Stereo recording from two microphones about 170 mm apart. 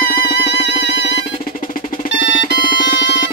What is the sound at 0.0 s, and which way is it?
Music, 65° left (ahead or behind).